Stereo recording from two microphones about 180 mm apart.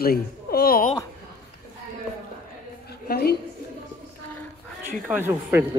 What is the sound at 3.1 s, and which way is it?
Speech, 60° left (ahead or behind).